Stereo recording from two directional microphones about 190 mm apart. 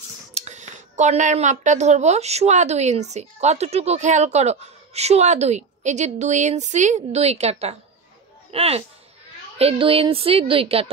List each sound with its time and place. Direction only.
0.3 s speech: 35° right (ahead or behind)